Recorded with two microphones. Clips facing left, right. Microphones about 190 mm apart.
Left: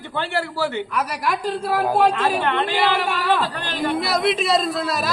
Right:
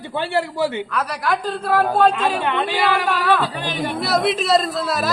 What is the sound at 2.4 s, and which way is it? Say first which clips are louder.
Speech: even; 10° right (ahead or behind).